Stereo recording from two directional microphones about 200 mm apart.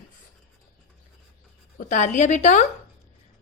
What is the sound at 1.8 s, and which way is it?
Speech, 35° left (ahead or behind).